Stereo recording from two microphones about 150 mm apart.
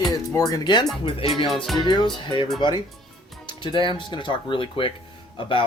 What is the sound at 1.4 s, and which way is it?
Music, centre (ahead or behind).